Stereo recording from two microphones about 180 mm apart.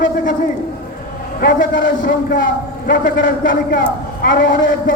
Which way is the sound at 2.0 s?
55° left (ahead or behind).